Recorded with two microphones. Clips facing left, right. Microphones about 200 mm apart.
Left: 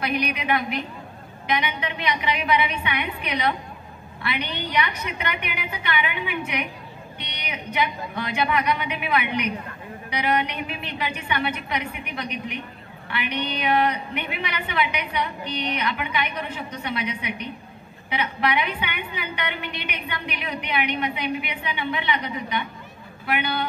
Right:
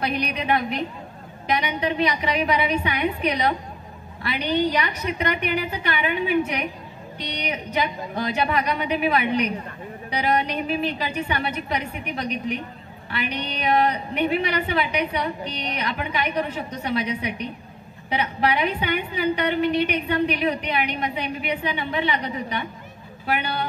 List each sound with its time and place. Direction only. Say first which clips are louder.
0.0 s a woman's voice: even; 35° right (ahead or behind)